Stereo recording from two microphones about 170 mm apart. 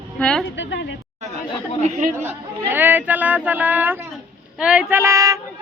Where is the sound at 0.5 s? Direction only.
90° left.